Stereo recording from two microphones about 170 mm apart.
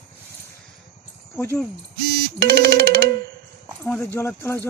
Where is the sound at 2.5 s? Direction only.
65° right (ahead or behind).